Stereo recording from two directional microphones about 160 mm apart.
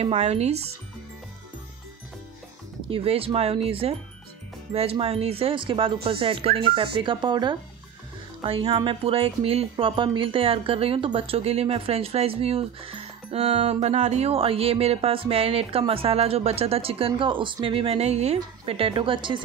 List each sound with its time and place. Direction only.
0.0 s speech: 40° right (ahead or behind)
2.9 s speech: 35° right (ahead or behind)